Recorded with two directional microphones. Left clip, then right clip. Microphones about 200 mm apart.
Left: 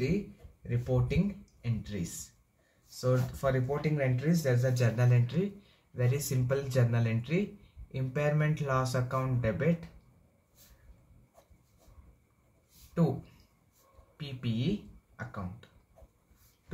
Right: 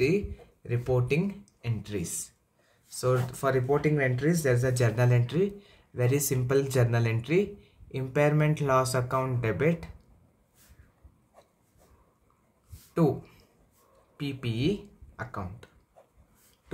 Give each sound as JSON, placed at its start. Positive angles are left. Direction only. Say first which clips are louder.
{"t": 0.7, "sound": "speech", "louder": "right 6 dB", "side_deg": -50}
{"t": 14.1, "sound": "speech", "louder": "right 4 dB", "side_deg": -45}